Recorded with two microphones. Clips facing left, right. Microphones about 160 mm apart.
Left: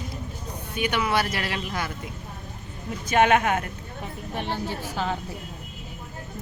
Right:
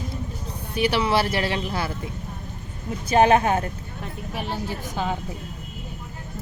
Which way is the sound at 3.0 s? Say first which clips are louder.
Right 3 dB; 30° right (ahead or behind).